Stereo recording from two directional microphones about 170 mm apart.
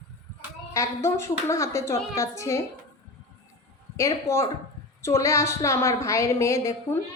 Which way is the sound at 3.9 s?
15° left (ahead or behind).